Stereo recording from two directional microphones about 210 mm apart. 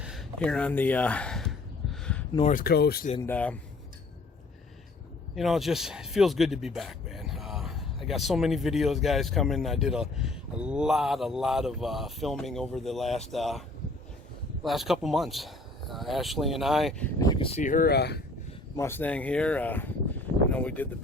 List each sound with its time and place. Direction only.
0.0 s a sound: centre (ahead or behind)
2.5 s speech: 45° left (ahead or behind)
3.2 s speech: 10° left (ahead or behind)
5.3 s speech: centre (ahead or behind)
14.6 s speech: centre (ahead or behind)
17.2 s speech: 20° left (ahead or behind); by 18.2 s 50° left (ahead or behind)
18.8 s speech: 10° left (ahead or behind)